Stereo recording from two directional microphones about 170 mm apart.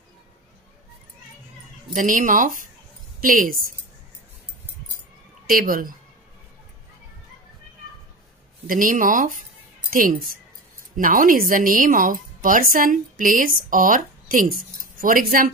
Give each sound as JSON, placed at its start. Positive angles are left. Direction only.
{"t": 2.0, "sound": "a woman's voice", "side_deg": -50}
{"t": 5.5, "sound": "a woman's voice", "side_deg": -55}
{"t": 8.6, "sound": "a woman's voice", "side_deg": -50}